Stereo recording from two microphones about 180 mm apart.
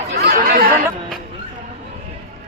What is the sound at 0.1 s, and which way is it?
Chatter, 55° right (ahead or behind).